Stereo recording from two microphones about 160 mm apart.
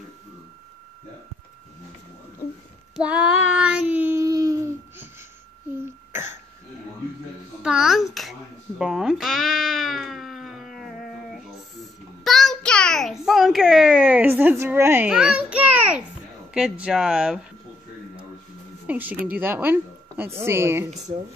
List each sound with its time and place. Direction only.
3.0 s child singing: 5° right (ahead or behind)
7.6 s music: 5° right (ahead or behind)
16.5 s speech: 5° right (ahead or behind)
18.9 s a woman's voice: 10° right (ahead or behind)